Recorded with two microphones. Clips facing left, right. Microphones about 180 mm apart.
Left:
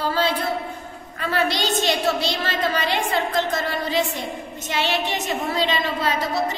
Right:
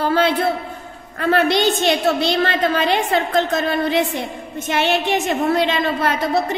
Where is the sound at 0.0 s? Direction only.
60° right (ahead or behind).